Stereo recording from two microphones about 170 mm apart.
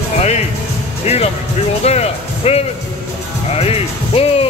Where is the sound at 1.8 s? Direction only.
40° left (ahead or behind).